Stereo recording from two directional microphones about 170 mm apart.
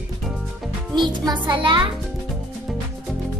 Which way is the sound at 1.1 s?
25° right (ahead or behind).